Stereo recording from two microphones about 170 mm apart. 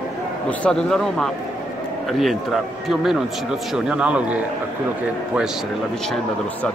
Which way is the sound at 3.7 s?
5° right (ahead or behind).